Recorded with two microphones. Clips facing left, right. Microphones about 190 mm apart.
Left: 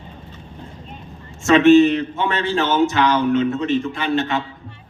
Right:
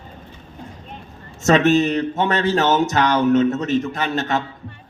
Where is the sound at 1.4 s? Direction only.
40° right (ahead or behind).